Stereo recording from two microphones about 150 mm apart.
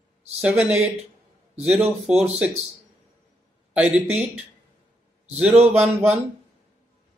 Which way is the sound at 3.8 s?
10° right (ahead or behind).